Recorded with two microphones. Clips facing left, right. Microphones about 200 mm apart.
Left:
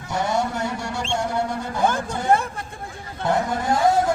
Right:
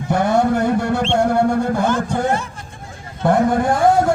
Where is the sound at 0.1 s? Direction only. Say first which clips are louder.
Right 8 dB; 55° right (ahead or behind).